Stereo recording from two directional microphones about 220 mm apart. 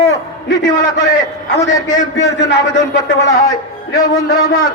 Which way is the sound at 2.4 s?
55° left (ahead or behind).